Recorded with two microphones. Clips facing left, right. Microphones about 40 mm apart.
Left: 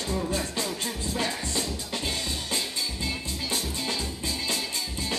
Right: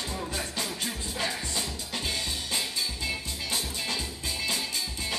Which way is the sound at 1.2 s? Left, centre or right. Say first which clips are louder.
Even; right.